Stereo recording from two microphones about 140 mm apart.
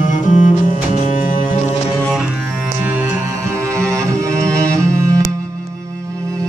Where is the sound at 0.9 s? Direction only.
65° left (ahead or behind).